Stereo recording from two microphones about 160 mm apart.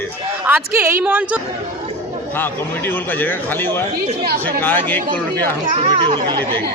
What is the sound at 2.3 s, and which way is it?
A man's voice, 10° left (ahead or behind).